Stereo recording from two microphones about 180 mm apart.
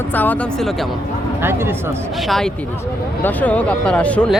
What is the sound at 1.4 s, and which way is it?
Speech, 10° right (ahead or behind).